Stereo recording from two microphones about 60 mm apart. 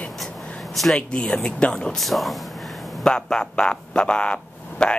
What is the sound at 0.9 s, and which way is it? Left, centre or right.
Speech, centre.